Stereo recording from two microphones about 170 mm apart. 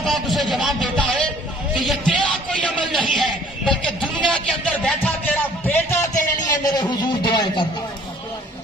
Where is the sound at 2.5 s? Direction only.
Centre (ahead or behind).